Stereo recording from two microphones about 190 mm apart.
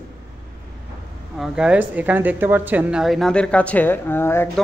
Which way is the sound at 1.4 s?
5° right (ahead or behind).